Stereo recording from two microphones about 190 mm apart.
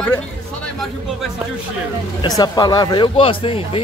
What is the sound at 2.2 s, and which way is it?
A man's voice, 20° left (ahead or behind).